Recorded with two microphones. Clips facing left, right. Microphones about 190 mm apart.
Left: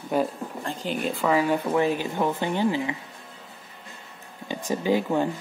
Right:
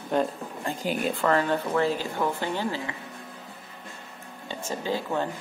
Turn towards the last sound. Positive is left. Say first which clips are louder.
# left 5 dB
turn(degrees=15)  # may be behind; listen again after turning